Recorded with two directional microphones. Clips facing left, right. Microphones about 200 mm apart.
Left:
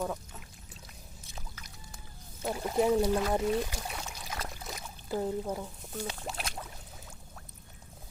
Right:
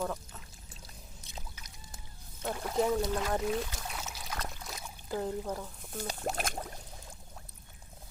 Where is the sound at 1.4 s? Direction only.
20° right (ahead or behind).